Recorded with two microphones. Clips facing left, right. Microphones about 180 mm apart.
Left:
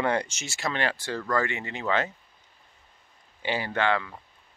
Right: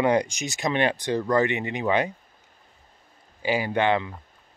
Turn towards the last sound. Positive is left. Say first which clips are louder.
# right 3 dB
turn(degrees=-20)  # may be behind; listen again after turning